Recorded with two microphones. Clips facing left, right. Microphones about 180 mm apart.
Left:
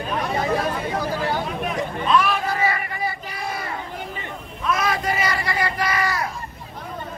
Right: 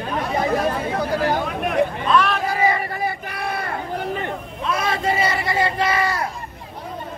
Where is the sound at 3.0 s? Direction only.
60° right (ahead or behind).